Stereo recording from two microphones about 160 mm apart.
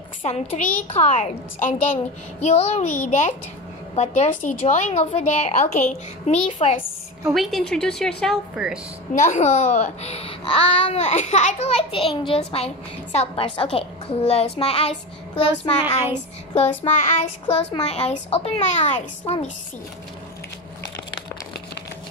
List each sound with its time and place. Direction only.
0.2 s a woman's voice: 45° left (ahead or behind)
7.2 s a woman's voice: centre (ahead or behind)
9.2 s a woman's voice: 45° left (ahead or behind)
12.3 s child singing: 35° left (ahead or behind)
16.5 s a woman's voice: 45° left (ahead or behind)
17.8 s child singing: 40° left (ahead or behind)